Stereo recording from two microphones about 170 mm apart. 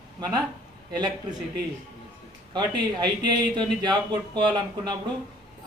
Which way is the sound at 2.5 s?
25° right (ahead or behind).